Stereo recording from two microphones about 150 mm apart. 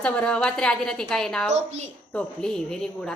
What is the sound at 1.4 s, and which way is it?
Speech, 50° right (ahead or behind).